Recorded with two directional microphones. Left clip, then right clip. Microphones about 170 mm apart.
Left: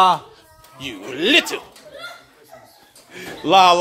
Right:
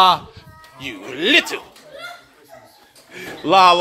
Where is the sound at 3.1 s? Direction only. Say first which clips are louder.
Even; 5° left (ahead or behind).